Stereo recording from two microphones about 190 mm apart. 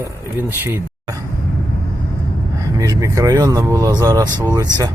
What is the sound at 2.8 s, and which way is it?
Speech, 15° right (ahead or behind).